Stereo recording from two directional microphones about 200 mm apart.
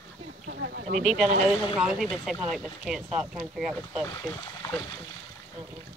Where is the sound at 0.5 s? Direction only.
50° right (ahead or behind).